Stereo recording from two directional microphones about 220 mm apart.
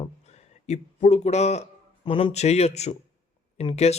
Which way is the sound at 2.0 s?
25° left (ahead or behind).